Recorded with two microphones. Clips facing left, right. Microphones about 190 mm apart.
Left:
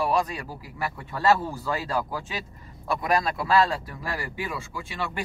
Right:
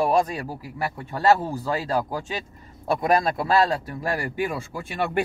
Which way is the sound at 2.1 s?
40° right (ahead or behind).